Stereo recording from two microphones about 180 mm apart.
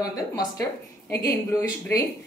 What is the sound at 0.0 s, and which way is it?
A woman's voice, 20° left (ahead or behind).